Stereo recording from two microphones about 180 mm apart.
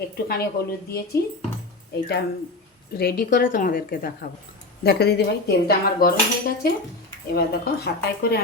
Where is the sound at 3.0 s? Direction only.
55° left (ahead or behind).